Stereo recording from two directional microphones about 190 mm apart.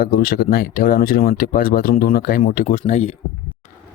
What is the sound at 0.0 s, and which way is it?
Speech, 50° left (ahead or behind).